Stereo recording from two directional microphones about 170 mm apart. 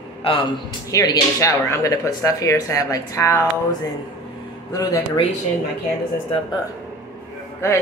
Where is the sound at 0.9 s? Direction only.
20° left (ahead or behind).